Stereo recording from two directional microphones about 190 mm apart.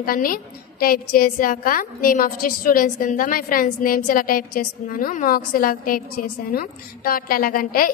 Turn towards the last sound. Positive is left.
turn(degrees=50)  # may be behind; listen again after turning